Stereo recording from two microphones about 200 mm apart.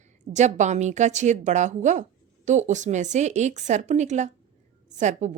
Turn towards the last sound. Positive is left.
turn(degrees=-35)  # may be behind; listen again after turning